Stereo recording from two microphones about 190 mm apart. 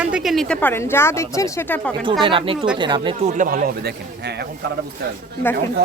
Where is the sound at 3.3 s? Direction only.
45° right (ahead or behind).